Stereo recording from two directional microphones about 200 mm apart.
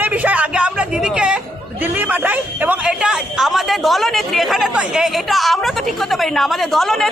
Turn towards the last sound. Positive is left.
turn(degrees=0)  # may be behind; listen again after turning